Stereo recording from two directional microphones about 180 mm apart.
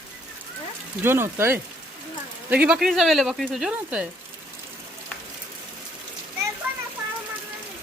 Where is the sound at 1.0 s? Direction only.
15° right (ahead or behind).